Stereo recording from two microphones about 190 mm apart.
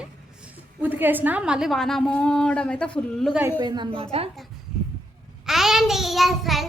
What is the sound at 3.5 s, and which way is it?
Speech, 20° right (ahead or behind).